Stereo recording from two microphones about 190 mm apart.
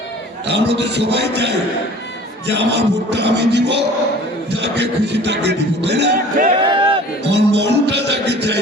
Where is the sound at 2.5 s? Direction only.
65° right (ahead or behind).